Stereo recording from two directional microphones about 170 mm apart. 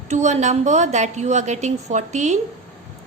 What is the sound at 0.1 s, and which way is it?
A woman's voice, 40° right (ahead or behind).